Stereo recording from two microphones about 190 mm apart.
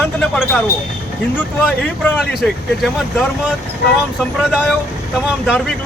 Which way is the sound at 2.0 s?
5° left (ahead or behind).